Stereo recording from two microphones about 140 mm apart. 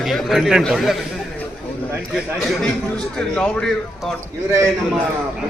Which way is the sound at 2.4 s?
Centre (ahead or behind).